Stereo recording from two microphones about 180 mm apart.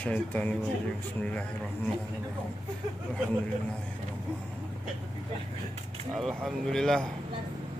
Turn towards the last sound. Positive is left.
turn(degrees=5)  # may be behind; listen again after turning